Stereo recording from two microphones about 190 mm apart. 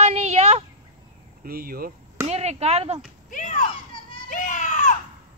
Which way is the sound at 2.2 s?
35° right (ahead or behind).